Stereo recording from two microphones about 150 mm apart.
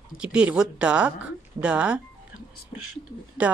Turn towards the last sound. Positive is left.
turn(degrees=-10)  # may be behind; listen again after turning